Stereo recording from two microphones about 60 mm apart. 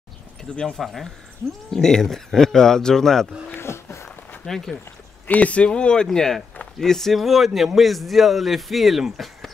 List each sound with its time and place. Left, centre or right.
0.4 s speech: centre
0.7 s a man's voice: centre
3.6 s a sound: left
4.5 s speech: centre
5.2 s a man's voice: left; by 9.5 s centre